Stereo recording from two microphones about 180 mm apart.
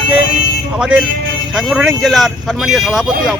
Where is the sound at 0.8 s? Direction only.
5° right (ahead or behind).